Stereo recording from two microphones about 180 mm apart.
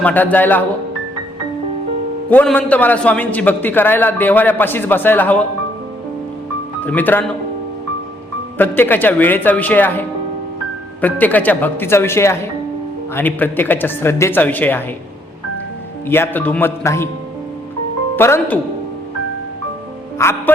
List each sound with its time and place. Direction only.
0.0 s a man's voice: 10° left (ahead or behind)
2.3 s a man's voice: 10° left (ahead or behind)
6.8 s a man's voice: 10° left (ahead or behind)
8.5 s a man's voice: 10° left (ahead or behind)
16.0 s a man's voice: 10° left (ahead or behind)
18.2 s a man's voice: 10° left (ahead or behind)
20.1 s music: 15° left (ahead or behind)